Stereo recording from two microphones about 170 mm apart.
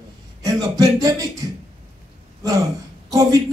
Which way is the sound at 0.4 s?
20° right (ahead or behind).